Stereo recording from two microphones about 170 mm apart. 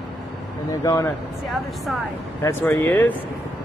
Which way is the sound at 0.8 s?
20° left (ahead or behind).